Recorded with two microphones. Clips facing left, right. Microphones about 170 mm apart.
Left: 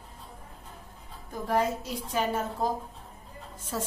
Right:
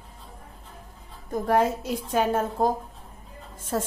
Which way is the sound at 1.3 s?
60° right (ahead or behind).